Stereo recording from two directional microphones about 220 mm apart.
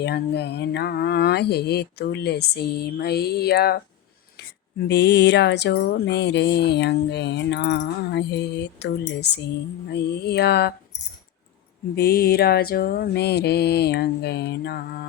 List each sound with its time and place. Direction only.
0.0 s music: 50° left (ahead or behind)
4.9 s music: 50° left (ahead or behind)
11.9 s music: 45° left (ahead or behind)